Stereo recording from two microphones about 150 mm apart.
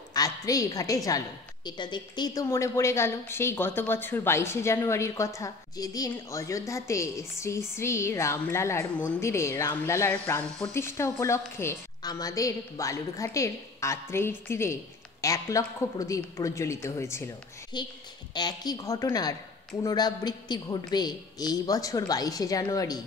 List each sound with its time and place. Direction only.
0.1 s a woman's voice: 25° left (ahead or behind)
17.7 s a woman's voice: 30° left (ahead or behind)